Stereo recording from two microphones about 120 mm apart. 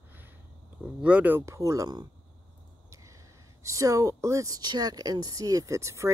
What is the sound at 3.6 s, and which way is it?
Speech, 25° right (ahead or behind).